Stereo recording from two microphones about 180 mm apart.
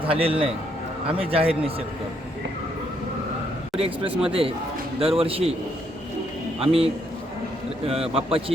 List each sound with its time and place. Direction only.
0.0 s a man's voice: 30° right (ahead or behind)
3.8 s a man's voice: 30° right (ahead or behind)
6.6 s a man's voice: 35° right (ahead or behind)
8.1 s a man's voice: 30° right (ahead or behind)